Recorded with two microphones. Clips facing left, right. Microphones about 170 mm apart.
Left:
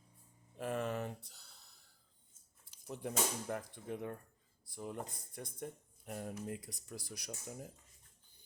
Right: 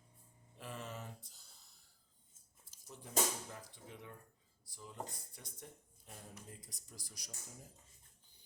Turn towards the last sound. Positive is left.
turn(degrees=65)  # may be behind; listen again after turning